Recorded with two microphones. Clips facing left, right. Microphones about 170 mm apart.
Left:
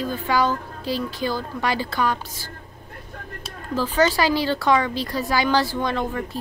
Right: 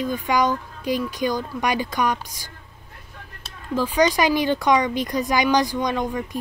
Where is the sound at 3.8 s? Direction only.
15° right (ahead or behind).